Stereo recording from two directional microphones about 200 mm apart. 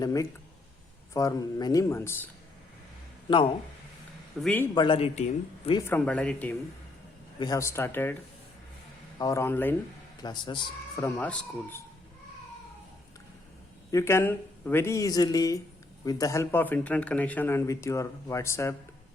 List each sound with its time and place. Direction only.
0.0 s speech: 15° left (ahead or behind)
4.4 s speech: 5° left (ahead or behind)
4.7 s a man's voice: 25° left (ahead or behind)
5.9 s speech: 5° left (ahead or behind)
7.3 s speech: 20° left (ahead or behind)
9.1 s speech: 15° left (ahead or behind)
10.2 s speech: 20° left (ahead or behind)
13.9 s speech: 10° left (ahead or behind)